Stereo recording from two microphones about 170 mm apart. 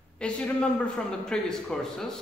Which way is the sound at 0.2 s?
5° left (ahead or behind).